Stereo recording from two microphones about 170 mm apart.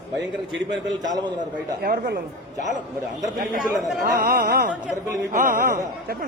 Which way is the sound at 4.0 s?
60° right (ahead or behind).